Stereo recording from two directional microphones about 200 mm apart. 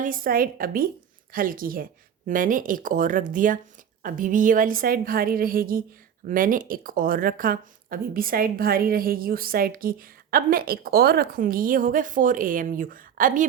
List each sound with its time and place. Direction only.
0.0 s speech: 45° right (ahead or behind)